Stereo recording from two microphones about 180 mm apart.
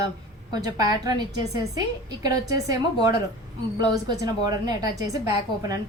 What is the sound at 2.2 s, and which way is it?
A woman's voice, 20° right (ahead or behind).